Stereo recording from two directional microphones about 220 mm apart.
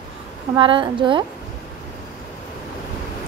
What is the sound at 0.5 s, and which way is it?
Speech, 20° right (ahead or behind).